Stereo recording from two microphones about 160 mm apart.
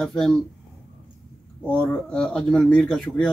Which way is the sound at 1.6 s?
10° left (ahead or behind).